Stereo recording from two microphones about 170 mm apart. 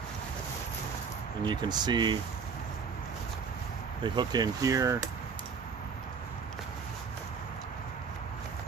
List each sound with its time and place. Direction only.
1.4 s speech: 25° right (ahead or behind)
4.0 s speech: 25° right (ahead or behind)